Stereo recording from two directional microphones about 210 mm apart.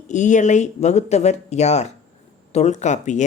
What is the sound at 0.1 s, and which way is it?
Speech, 35° left (ahead or behind).